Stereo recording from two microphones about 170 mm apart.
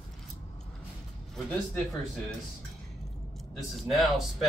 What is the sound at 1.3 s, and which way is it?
Speech, centre (ahead or behind).